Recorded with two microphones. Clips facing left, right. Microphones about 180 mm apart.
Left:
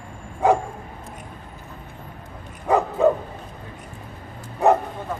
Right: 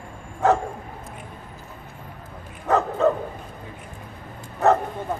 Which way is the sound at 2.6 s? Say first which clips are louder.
Left 2 dB; 15° left (ahead or behind).